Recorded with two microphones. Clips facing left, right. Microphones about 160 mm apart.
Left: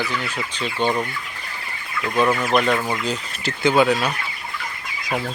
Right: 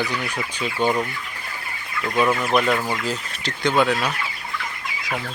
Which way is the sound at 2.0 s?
Centre (ahead or behind).